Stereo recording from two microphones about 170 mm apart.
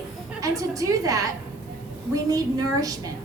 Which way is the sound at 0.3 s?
20° right (ahead or behind).